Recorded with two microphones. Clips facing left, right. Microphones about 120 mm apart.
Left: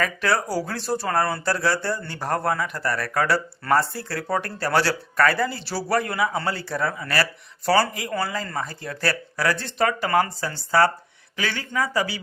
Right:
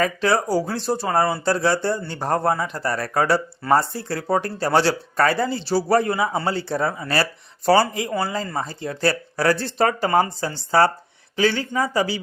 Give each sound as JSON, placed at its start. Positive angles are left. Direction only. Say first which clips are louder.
{"t": 0.0, "sound": "speech", "louder": "right 3 dB", "side_deg": -20}